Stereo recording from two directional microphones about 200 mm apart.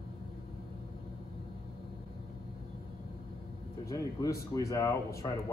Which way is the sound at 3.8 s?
15° left (ahead or behind).